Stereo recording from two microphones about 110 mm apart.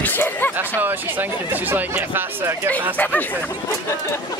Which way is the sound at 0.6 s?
20° right (ahead or behind).